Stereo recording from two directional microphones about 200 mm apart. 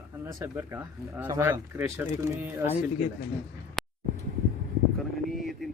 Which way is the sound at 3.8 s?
Centre (ahead or behind).